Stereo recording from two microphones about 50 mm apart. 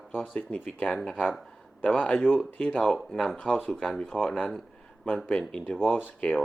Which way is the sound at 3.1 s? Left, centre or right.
Centre.